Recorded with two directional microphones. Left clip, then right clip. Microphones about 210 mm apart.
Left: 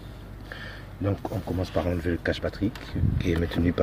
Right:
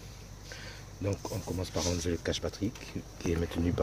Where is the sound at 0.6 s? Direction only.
5° right (ahead or behind).